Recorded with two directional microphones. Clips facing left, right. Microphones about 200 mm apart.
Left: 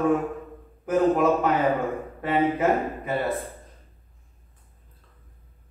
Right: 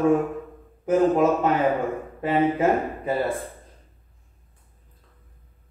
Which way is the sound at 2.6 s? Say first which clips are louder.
Right 1 dB; 30° right (ahead or behind).